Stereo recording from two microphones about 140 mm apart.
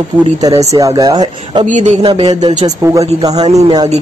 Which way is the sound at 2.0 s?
35° right (ahead or behind).